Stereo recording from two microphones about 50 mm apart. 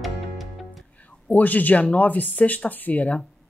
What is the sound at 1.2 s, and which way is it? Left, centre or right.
Speech, left.